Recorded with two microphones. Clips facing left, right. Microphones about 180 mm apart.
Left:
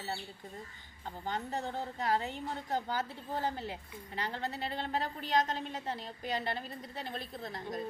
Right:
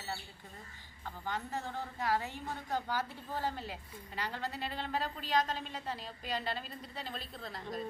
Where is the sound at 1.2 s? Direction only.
20° left (ahead or behind).